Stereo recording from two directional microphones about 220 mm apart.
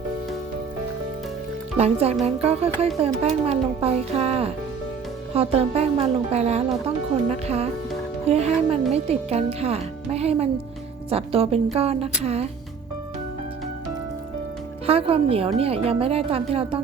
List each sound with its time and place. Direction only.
1.8 s speech: 30° right (ahead or behind)
14.8 s speech: 25° right (ahead or behind)